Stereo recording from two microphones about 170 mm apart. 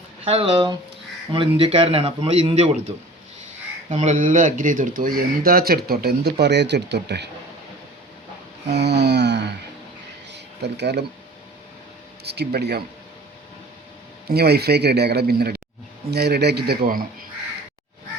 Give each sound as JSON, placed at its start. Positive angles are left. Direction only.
{"t": 0.3, "sound": "a man's voice", "side_deg": -35}
{"t": 3.8, "sound": "speech", "side_deg": -45}
{"t": 6.4, "sound": "speech", "side_deg": -90}
{"t": 8.7, "sound": "a sound", "side_deg": -80}
{"t": 12.2, "sound": "speech", "side_deg": -75}
{"t": 14.3, "sound": "speech", "side_deg": -70}